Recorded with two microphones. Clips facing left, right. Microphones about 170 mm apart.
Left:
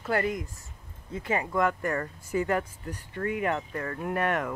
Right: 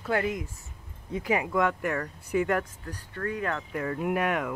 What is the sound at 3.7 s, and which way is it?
Wind chime, 10° right (ahead or behind).